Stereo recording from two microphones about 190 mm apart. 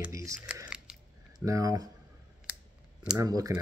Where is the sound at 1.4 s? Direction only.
15° right (ahead or behind).